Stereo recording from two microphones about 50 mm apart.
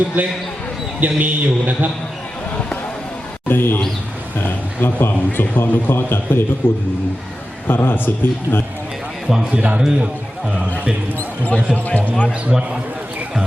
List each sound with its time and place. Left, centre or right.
0.2 s a man's voice: right
3.5 s a man's voice: left
9.3 s a man's voice: centre
11.2 s speech: left
12.5 s a man's voice: centre